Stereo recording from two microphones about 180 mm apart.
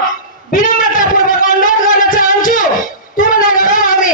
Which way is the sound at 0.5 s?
50° left (ahead or behind).